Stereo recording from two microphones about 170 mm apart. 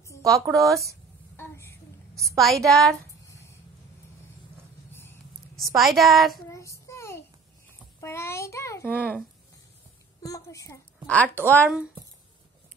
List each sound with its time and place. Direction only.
0.2 s speech: 20° right (ahead or behind)
1.3 s a sound: 15° left (ahead or behind)
2.1 s a woman's voice: centre (ahead or behind)
5.8 s a woman's voice: centre (ahead or behind)
6.4 s child singing: 15° left (ahead or behind)
8.0 s a sound: 15° left (ahead or behind)
10.2 s a woman's voice: 20° left (ahead or behind)